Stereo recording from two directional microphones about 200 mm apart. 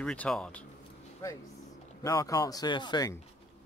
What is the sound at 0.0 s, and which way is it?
Speech, 5° left (ahead or behind).